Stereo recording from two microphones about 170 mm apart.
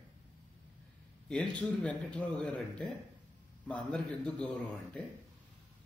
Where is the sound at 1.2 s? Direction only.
5° left (ahead or behind).